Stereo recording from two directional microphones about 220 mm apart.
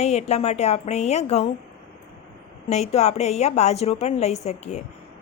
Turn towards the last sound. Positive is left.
turn(degrees=30)  # may be behind; listen again after turning